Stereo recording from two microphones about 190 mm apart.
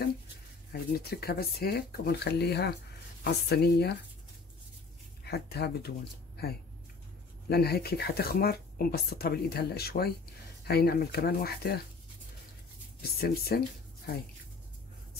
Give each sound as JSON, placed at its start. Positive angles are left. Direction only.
{"t": 0.9, "sound": "speech", "side_deg": 55}
{"t": 5.2, "sound": "speech", "side_deg": 60}
{"t": 13.0, "sound": "speech", "side_deg": 55}